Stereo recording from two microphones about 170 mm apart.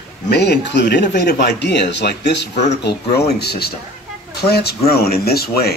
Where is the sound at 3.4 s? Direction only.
70° left (ahead or behind).